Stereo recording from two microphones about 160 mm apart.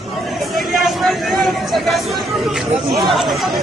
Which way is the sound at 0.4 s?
Centre (ahead or behind).